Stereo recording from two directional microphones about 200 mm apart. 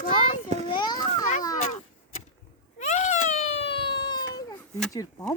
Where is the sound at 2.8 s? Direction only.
35° left (ahead or behind); by 4.6 s 20° left (ahead or behind).